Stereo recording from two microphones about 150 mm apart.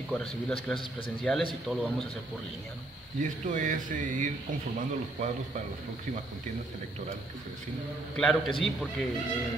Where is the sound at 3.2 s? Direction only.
55° right (ahead or behind).